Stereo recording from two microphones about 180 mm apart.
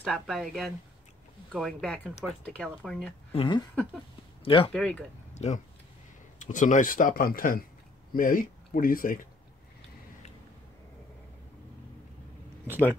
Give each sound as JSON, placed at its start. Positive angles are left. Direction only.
{"t": 0.0, "sound": "speech", "side_deg": 0}
{"t": 3.3, "sound": "speech", "side_deg": 25}
{"t": 4.7, "sound": "speech", "side_deg": 5}
{"t": 5.3, "sound": "a sound", "side_deg": 40}
{"t": 6.4, "sound": "speech", "side_deg": 45}
{"t": 12.6, "sound": "speech", "side_deg": 10}